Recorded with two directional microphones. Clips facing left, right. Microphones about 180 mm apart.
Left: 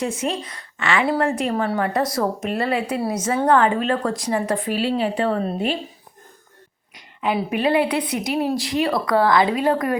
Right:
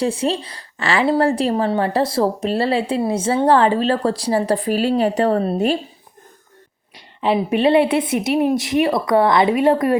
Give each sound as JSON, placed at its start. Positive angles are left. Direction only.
{"t": 0.0, "sound": "a woman's voice", "side_deg": -30}
{"t": 6.9, "sound": "a woman's voice", "side_deg": -30}